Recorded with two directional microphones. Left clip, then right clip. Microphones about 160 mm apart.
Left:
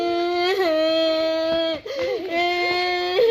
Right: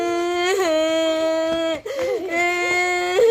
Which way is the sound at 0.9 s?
15° right (ahead or behind).